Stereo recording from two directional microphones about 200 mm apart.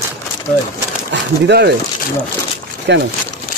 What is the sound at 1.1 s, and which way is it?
Speech, 55° right (ahead or behind).